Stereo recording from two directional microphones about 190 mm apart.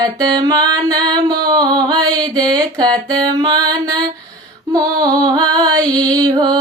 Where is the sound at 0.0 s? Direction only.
20° right (ahead or behind).